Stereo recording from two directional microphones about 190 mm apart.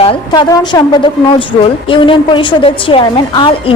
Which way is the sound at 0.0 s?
25° left (ahead or behind).